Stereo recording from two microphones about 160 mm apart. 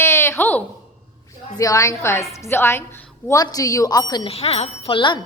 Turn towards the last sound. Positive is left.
turn(degrees=30)  # may be behind; listen again after turning